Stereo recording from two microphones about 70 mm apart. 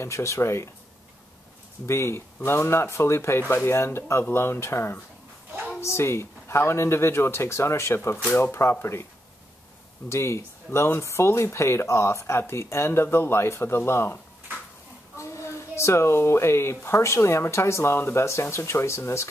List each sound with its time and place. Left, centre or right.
0.0 s speech: left
1.9 s speech: left
10.0 s speech: left